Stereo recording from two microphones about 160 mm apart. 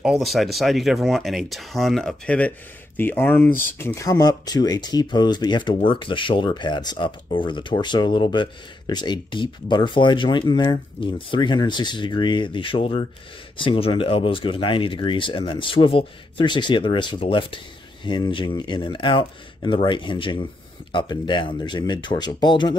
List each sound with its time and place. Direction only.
0.0 s speech: centre (ahead or behind); by 22.8 s 30° left (ahead or behind)